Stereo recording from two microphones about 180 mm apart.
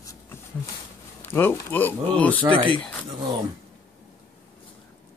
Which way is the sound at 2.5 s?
30° right (ahead or behind).